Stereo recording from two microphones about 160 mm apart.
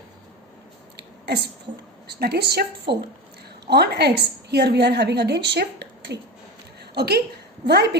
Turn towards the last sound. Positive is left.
turn(degrees=-90)